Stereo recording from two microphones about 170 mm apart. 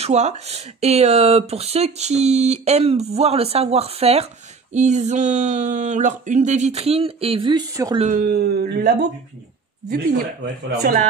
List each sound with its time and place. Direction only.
0.0 s speech: 40° right (ahead or behind)
4.7 s a sound: 45° right (ahead or behind); by 8.0 s 20° right (ahead or behind)
8.3 s speech: 65° right (ahead or behind)